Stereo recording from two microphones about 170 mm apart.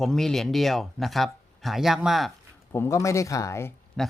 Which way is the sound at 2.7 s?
15° left (ahead or behind).